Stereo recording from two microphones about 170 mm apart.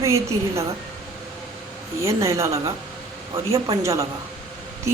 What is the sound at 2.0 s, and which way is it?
A woman's voice, 15° right (ahead or behind).